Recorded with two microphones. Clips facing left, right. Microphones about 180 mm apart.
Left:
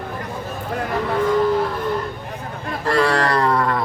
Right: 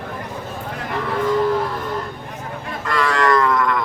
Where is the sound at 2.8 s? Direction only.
35° left (ahead or behind).